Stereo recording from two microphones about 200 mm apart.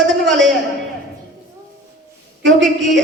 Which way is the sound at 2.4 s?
65° right (ahead or behind).